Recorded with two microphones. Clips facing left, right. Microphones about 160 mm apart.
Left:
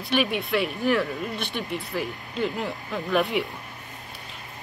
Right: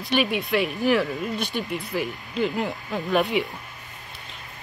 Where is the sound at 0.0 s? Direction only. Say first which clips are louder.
Right 1 dB; centre (ahead or behind).